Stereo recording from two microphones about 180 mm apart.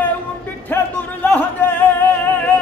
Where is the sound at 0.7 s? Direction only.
10° left (ahead or behind).